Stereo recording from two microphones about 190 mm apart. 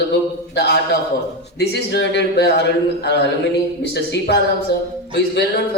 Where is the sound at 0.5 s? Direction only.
60° left (ahead or behind).